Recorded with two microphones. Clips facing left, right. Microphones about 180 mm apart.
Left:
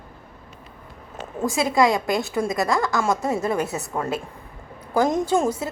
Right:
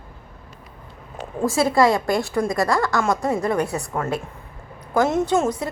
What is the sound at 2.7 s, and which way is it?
Speech, centre (ahead or behind).